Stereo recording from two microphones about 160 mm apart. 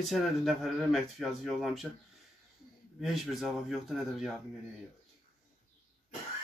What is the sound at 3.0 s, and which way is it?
A man's voice, centre (ahead or behind).